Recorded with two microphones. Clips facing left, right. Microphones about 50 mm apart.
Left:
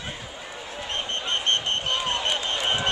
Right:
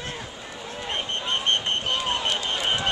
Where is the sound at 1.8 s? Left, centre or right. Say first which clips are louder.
Even; centre.